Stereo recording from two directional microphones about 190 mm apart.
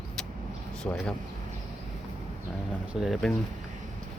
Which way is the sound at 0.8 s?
5° left (ahead or behind).